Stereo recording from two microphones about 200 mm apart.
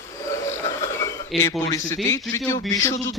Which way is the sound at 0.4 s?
15° left (ahead or behind).